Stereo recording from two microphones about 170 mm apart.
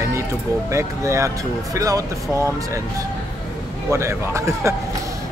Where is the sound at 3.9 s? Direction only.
15° right (ahead or behind).